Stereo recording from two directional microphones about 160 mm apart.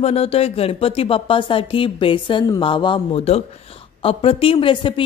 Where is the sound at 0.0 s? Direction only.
40° left (ahead or behind).